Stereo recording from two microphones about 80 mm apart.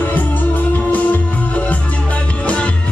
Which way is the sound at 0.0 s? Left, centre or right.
Left.